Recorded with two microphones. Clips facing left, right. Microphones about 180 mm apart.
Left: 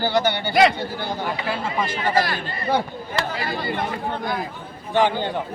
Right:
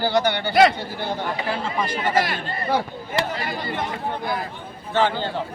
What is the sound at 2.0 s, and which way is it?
Speech, 20° right (ahead or behind).